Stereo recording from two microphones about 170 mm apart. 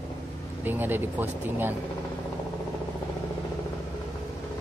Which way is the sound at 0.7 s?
10° right (ahead or behind).